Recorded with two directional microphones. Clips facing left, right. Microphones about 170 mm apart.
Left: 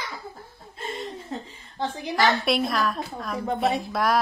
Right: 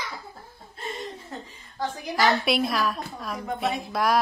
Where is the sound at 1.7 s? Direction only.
25° left (ahead or behind).